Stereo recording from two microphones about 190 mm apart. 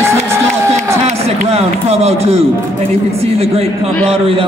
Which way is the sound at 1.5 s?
30° right (ahead or behind).